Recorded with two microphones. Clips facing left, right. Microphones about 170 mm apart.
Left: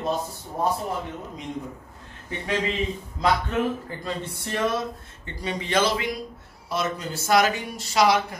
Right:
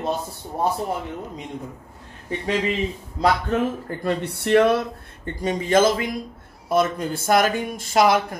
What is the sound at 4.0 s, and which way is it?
Speech, 65° right (ahead or behind).